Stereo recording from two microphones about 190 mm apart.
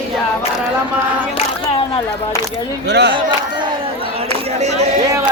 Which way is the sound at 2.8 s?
65° right (ahead or behind).